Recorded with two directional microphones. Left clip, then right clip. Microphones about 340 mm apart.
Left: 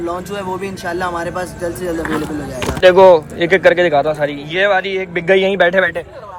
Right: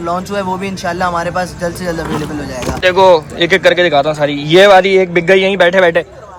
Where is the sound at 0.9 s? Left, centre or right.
Right.